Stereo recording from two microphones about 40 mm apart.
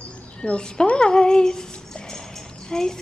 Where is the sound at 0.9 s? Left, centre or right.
Left.